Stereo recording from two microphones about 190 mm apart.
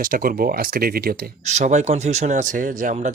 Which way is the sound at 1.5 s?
40° right (ahead or behind).